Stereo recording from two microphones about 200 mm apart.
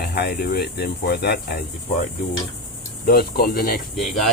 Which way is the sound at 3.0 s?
50° left (ahead or behind).